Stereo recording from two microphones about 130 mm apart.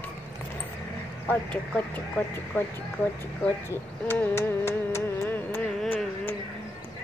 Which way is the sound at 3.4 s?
15° left (ahead or behind).